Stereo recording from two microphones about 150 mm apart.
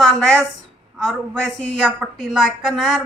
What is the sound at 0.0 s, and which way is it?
A woman's voice, 5° left (ahead or behind).